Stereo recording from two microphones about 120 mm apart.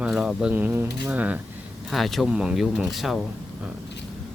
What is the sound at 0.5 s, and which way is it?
Speech, 15° right (ahead or behind).